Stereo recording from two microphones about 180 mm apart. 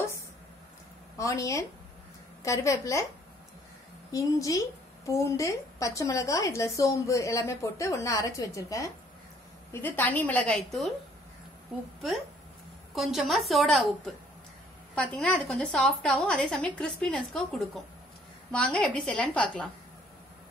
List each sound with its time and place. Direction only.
1.1 s a woman's voice: 15° left (ahead or behind)
4.1 s a woman's voice: 20° left (ahead or behind)
12.9 s a woman's voice: centre (ahead or behind)
15.0 s a woman's voice: 5° left (ahead or behind)